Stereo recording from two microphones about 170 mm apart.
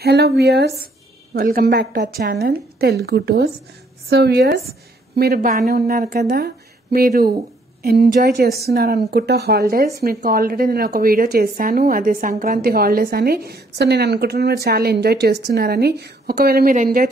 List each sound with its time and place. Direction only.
0.0 s a woman's voice: 75° right (ahead or behind)
1.3 s speech: 60° right (ahead or behind)
2.0 s speech: 55° right (ahead or behind)
2.4 s a woman's voice: 70° right (ahead or behind)